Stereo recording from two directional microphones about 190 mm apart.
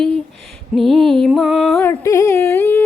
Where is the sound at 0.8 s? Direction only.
Centre (ahead or behind).